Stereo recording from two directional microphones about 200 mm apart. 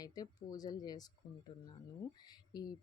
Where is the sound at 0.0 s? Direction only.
20° left (ahead or behind).